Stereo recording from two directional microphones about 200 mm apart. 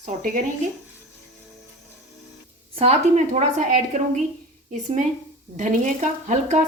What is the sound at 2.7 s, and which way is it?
A woman's voice, 30° right (ahead or behind).